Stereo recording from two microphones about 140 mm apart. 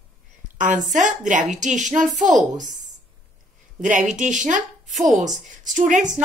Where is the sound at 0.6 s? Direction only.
65° right (ahead or behind).